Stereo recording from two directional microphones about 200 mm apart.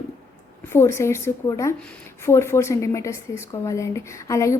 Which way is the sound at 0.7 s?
10° left (ahead or behind).